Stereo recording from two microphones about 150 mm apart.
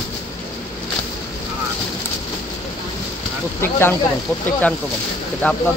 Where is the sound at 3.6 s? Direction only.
15° left (ahead or behind).